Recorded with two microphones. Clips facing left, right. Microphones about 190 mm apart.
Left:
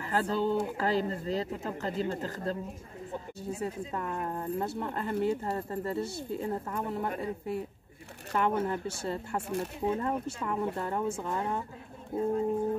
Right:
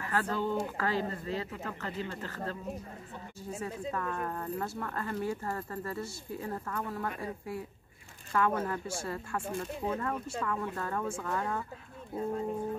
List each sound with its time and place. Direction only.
0.1 s speech: 30° left (ahead or behind)
3.6 s speech: 20° left (ahead or behind)
12.1 s speech: 50° left (ahead or behind)